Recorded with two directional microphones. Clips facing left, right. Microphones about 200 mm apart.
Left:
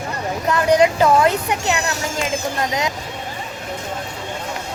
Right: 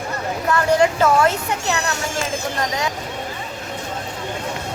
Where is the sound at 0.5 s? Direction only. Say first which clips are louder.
Left 2 dB; 15° left (ahead or behind).